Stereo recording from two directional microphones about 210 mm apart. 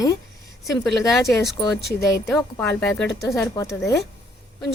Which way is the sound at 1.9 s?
10° left (ahead or behind).